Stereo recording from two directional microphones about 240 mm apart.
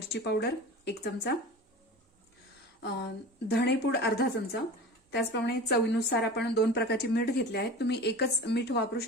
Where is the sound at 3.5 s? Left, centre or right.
Left.